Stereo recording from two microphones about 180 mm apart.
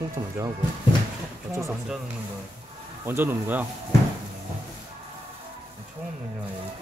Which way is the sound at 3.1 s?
10° right (ahead or behind).